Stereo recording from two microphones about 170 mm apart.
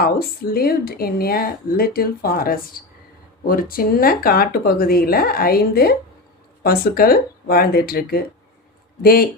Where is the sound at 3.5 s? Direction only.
60° left (ahead or behind).